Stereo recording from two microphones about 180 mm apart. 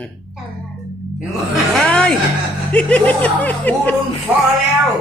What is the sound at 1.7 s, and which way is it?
Speech, 5° left (ahead or behind).